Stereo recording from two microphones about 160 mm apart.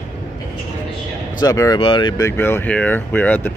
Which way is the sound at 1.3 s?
20° left (ahead or behind).